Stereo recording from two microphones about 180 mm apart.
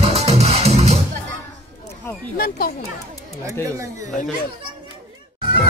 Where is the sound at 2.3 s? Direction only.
55° left (ahead or behind).